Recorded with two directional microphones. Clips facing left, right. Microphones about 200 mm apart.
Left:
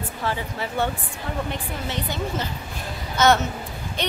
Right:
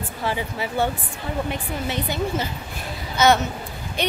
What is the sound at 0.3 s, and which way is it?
Speech, 10° right (ahead or behind).